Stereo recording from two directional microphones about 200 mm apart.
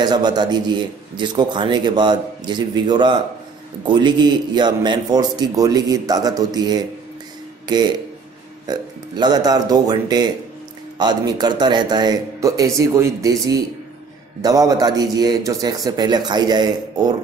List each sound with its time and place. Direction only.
0.0 s a man's voice: 20° right (ahead or behind)